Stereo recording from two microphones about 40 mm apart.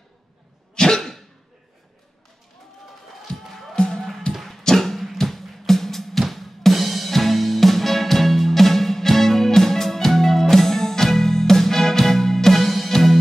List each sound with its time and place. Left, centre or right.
0.7 s cough: centre
3.4 s music: centre
3.7 s music: centre
4.3 s a sound: centre
4.6 s music: centre